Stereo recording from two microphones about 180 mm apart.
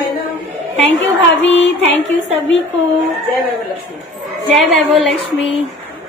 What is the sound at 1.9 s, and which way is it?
Speech, 40° right (ahead or behind).